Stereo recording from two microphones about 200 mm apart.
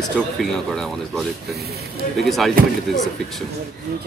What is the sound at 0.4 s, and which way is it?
Speech, centre (ahead or behind).